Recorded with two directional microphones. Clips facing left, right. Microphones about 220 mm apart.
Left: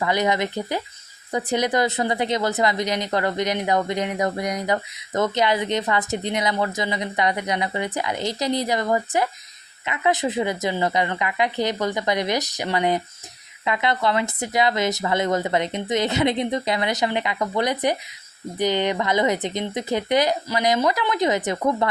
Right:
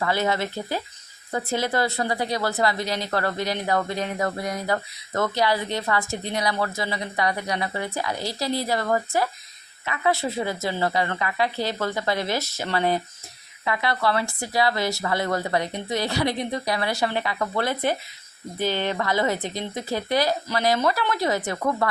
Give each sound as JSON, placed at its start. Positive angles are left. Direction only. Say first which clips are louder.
{"t": 0.0, "sound": "a woman's voice", "louder": "left 2 dB", "side_deg": 15}